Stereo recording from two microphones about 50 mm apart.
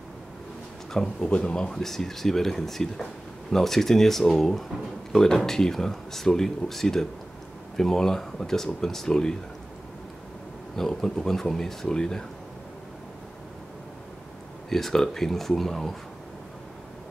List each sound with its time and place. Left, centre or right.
0.9 s speech: centre
1.7 s speech: centre
10.8 s speech: centre
14.7 s speech: centre